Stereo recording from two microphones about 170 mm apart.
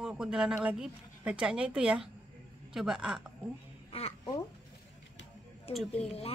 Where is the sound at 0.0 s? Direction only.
5° right (ahead or behind).